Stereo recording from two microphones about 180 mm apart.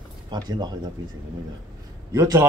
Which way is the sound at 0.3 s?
20° right (ahead or behind).